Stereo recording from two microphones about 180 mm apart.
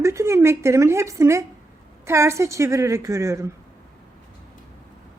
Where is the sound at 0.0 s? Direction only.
15° right (ahead or behind).